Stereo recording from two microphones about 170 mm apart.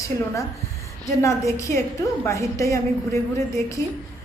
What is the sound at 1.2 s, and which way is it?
A woman's voice, 15° left (ahead or behind).